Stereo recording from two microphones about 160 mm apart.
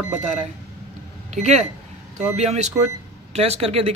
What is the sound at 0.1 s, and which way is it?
Speech, 45° right (ahead or behind).